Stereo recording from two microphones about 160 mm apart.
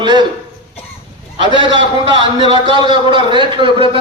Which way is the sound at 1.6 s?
30° right (ahead or behind).